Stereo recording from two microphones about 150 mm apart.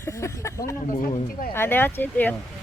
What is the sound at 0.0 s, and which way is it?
Speech, 20° left (ahead or behind).